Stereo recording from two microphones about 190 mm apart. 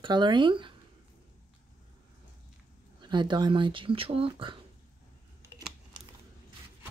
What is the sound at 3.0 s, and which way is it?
Speech, 25° right (ahead or behind).